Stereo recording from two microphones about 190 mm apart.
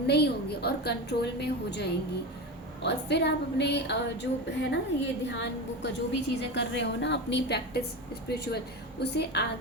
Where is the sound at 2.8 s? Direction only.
65° left (ahead or behind).